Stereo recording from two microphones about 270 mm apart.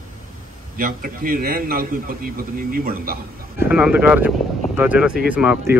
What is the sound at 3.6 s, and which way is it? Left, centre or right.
A man's voice, centre.